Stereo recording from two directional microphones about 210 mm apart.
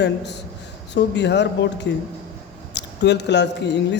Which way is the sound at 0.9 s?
55° left (ahead or behind).